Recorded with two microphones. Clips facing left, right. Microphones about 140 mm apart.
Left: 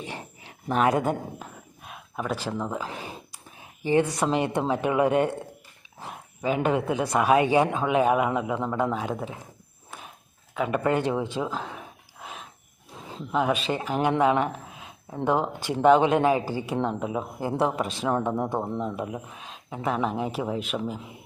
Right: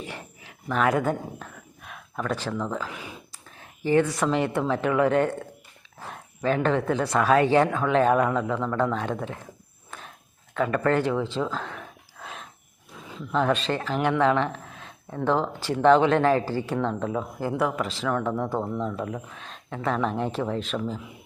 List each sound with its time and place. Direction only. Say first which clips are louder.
0.0 s speech: left 1 dB; 20° left (ahead or behind)
2.1 s speech: right 1 dB; 5° left (ahead or behind)
2.9 s speech: left 2 dB; 35° left (ahead or behind)
3.6 s speech: right 1 dB; 20° left (ahead or behind)
9.9 s walk: even; 10° left (ahead or behind)
10.5 s speech: right 2 dB; 5° left (ahead or behind)
10.8 s a sound: right 1 dB; 15° left (ahead or behind)
13.3 s speech: right 1 dB; 10° left (ahead or behind)
17.5 s speech: left 1 dB; 25° left (ahead or behind); by 21.0 s 10° left (ahead or behind)